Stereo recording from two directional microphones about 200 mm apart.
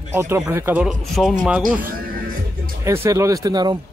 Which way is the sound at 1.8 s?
45° right (ahead or behind).